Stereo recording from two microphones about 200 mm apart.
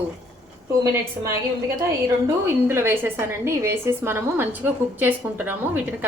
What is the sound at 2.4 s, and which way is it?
A woman's voice, 10° right (ahead or behind).